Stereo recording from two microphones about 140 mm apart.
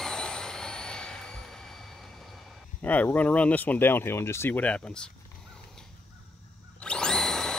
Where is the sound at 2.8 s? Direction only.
10° left (ahead or behind).